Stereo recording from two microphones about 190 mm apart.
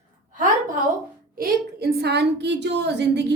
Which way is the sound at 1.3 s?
60° right (ahead or behind).